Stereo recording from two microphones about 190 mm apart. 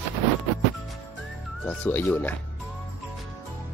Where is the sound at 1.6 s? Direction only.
10° left (ahead or behind).